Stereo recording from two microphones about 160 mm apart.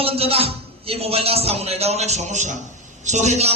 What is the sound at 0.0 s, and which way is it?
Music, 35° right (ahead or behind).